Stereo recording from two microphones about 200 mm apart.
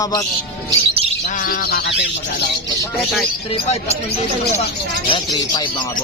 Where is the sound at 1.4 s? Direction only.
45° left (ahead or behind).